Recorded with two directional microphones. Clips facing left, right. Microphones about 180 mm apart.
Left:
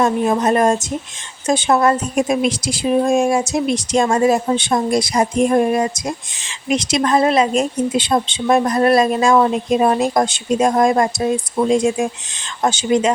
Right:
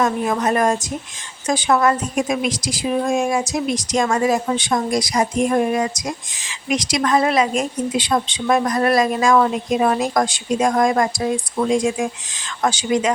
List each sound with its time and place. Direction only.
0.0 s speech: 30° left (ahead or behind)